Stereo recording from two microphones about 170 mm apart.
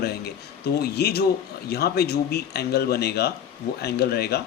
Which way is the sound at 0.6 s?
70° left (ahead or behind).